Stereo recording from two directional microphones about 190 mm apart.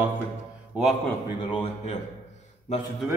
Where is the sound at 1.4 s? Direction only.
25° left (ahead or behind).